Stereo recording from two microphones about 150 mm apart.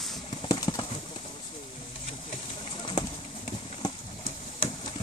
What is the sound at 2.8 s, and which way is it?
Pigeon, 35° left (ahead or behind).